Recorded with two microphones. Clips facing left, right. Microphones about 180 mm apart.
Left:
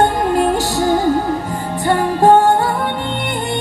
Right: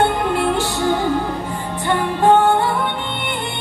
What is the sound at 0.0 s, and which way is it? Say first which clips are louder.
Music: left 3 dB; 40° left (ahead or behind).